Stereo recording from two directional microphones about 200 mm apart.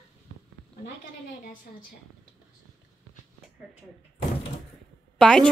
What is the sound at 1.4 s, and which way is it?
Speech, 45° left (ahead or behind).